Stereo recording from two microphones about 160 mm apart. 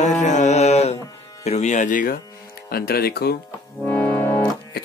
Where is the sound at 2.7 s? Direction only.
70° left (ahead or behind).